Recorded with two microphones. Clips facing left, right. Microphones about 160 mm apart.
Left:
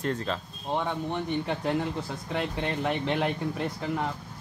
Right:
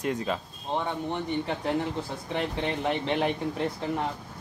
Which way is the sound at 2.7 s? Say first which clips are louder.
Even; centre (ahead or behind).